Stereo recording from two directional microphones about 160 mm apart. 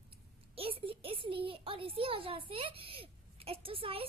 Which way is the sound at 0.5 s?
35° right (ahead or behind).